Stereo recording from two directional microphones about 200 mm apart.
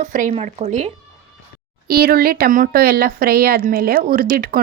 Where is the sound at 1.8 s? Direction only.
50° right (ahead or behind).